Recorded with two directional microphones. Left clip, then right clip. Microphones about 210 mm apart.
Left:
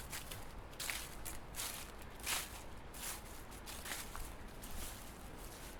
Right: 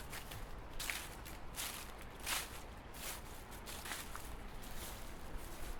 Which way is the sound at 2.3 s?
5° left (ahead or behind).